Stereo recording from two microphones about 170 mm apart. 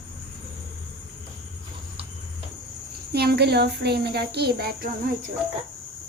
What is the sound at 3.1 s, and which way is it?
Speech, 70° right (ahead or behind).